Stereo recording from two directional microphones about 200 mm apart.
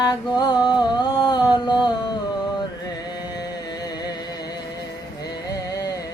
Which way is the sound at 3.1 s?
20° left (ahead or behind).